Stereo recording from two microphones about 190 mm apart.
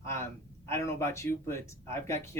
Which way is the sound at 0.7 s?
15° left (ahead or behind).